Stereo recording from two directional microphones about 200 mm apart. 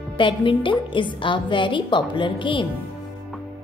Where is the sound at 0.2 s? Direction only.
25° left (ahead or behind).